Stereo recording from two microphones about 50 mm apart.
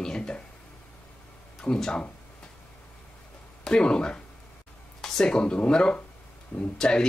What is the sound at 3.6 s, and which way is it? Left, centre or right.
Speech, centre.